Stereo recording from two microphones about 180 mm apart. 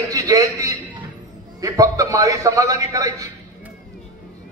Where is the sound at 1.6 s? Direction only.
20° right (ahead or behind).